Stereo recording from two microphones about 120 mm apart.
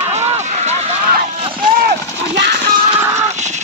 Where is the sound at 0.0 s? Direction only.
65° right (ahead or behind).